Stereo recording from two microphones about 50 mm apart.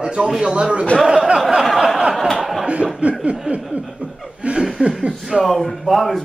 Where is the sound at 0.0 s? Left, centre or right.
Centre.